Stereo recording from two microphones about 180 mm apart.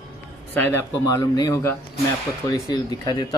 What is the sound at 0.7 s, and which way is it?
Speech, 15° left (ahead or behind).